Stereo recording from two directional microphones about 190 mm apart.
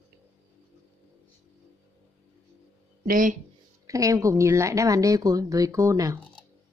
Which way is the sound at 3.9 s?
15° right (ahead or behind).